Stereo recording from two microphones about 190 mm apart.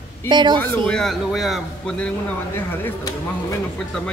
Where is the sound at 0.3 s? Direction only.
25° right (ahead or behind).